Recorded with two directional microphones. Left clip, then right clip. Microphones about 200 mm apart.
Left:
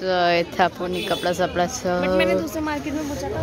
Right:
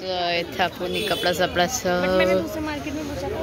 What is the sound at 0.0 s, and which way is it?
Speech, 35° left (ahead or behind).